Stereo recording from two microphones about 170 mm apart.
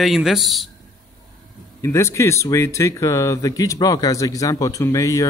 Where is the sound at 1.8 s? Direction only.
15° left (ahead or behind).